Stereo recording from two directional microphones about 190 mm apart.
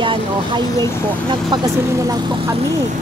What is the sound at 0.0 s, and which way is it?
Vehicle, 25° right (ahead or behind).